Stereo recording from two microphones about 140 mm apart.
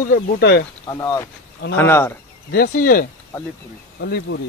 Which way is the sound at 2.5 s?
85° left.